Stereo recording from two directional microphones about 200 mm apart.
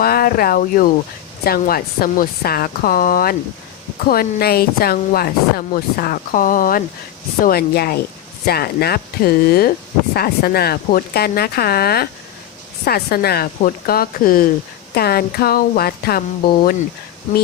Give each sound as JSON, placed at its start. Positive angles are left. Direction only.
{"t": 0.0, "sound": "a woman's voice", "side_deg": 50}